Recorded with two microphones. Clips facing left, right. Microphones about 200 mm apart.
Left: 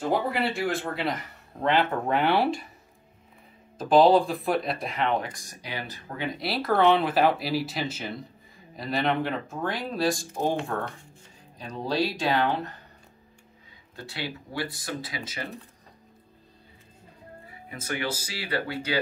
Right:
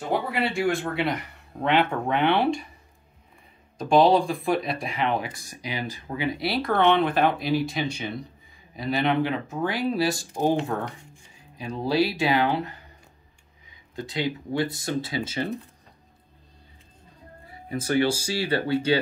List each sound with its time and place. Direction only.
0.3 s speech: centre (ahead or behind)
3.7 s speech: centre (ahead or behind)
10.5 s speech: 20° right (ahead or behind)
17.5 s speech: 35° right (ahead or behind)